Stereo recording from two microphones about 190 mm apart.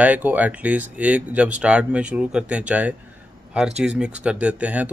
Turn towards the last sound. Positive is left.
turn(degrees=-5)  # may be behind; listen again after turning